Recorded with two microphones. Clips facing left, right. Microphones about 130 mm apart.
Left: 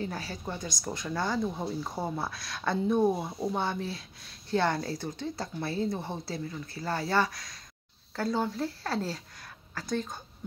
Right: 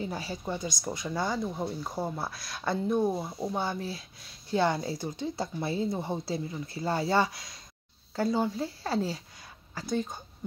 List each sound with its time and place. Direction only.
0.0 s speech: 15° right (ahead or behind)
3.0 s speech: 10° left (ahead or behind)
3.3 s a woman's voice: 5° right (ahead or behind)